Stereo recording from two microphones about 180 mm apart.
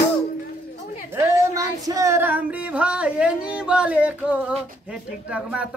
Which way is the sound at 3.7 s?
5° right (ahead or behind).